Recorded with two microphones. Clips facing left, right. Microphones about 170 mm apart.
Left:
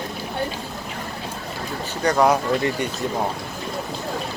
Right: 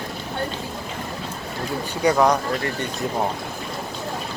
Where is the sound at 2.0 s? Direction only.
10° right (ahead or behind).